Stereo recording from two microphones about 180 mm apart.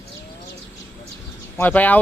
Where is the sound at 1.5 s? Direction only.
10° left (ahead or behind).